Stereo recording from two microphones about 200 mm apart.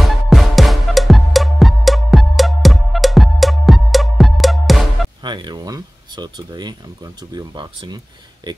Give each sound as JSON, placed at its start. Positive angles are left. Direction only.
{"t": 0.0, "sound": "music", "side_deg": 0}
{"t": 5.2, "sound": "a sound", "side_deg": -20}
{"t": 7.3, "sound": "speech", "side_deg": -20}